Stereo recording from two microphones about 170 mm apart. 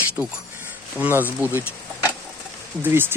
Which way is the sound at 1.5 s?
10° right (ahead or behind).